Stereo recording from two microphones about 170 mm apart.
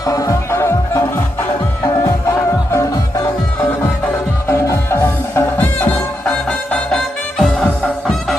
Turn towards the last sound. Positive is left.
turn(degrees=5)  # may be behind; listen again after turning